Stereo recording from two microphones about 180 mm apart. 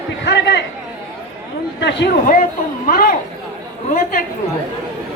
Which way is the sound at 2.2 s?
50° left (ahead or behind).